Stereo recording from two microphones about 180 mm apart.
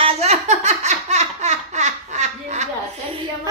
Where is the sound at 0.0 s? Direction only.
35° right (ahead or behind).